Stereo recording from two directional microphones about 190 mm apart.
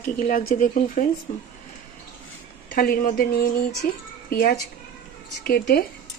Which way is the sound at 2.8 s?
50° left (ahead or behind).